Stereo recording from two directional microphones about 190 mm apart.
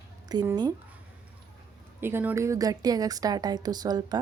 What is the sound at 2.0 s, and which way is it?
A woman's voice, 10° right (ahead or behind).